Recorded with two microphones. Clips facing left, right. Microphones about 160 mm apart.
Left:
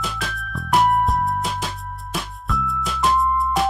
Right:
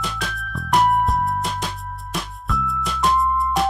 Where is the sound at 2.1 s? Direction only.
Centre (ahead or behind).